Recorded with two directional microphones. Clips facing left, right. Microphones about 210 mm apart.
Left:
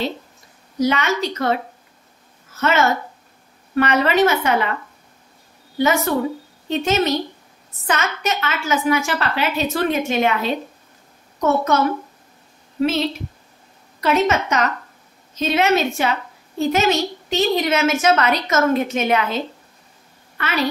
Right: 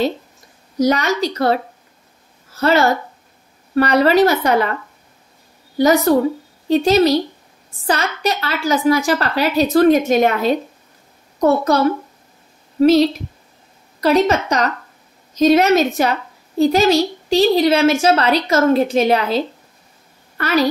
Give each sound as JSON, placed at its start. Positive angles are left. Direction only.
{"t": 0.7, "sound": "a woman's voice", "side_deg": -40}
{"t": 5.8, "sound": "a woman's voice", "side_deg": -35}
{"t": 12.8, "sound": "a woman's voice", "side_deg": -40}